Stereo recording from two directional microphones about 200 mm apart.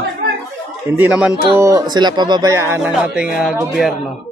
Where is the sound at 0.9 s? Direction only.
5° right (ahead or behind).